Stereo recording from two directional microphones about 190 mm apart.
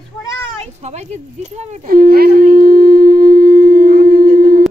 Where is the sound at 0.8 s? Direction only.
35° right (ahead or behind); by 4.6 s 55° right (ahead or behind).